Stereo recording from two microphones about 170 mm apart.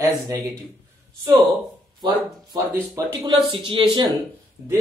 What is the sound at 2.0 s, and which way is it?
Speech, 25° right (ahead or behind).